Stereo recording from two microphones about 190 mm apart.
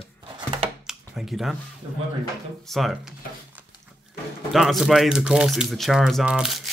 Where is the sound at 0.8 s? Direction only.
Centre (ahead or behind).